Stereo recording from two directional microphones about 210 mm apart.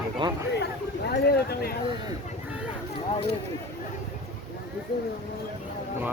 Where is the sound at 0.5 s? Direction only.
50° left (ahead or behind).